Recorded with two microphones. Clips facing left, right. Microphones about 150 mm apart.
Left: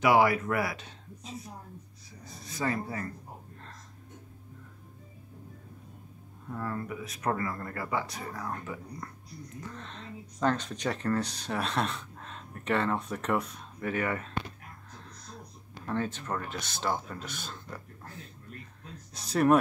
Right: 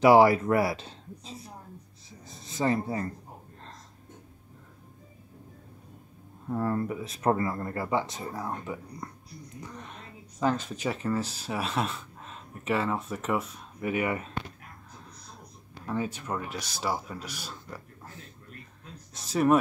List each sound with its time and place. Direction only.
0.0 s speech: 30° right (ahead or behind)
2.2 s a sound: 25° right (ahead or behind)
6.5 s speech: 35° right (ahead or behind); by 14.3 s 15° right (ahead or behind)
15.9 s a man's voice: 10° right (ahead or behind)